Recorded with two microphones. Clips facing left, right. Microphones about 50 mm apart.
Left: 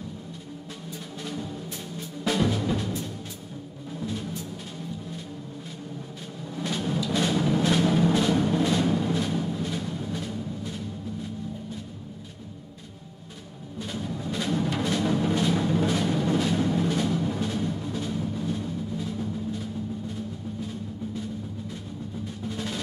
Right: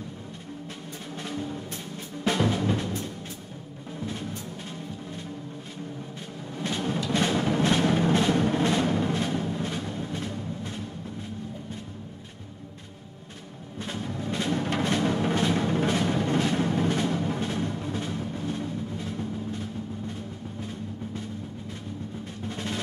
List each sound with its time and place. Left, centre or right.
1.2 s music: centre
4.0 s music: right
6.5 s music: centre
13.9 s music: centre
14.6 s music: right
22.5 s music: centre